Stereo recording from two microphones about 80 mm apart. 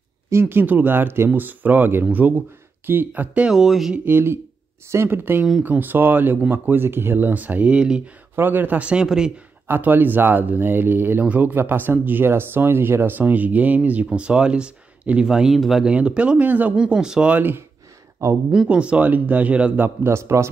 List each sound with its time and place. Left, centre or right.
0.3 s speech: right
3.5 s speech: centre
3.9 s speech: right
8.4 s speech: right; by 9.3 s centre
9.7 s speech: right; by 15.9 s centre
15.9 s speech: centre
18.5 s speech: centre
19.8 s a man's voice: right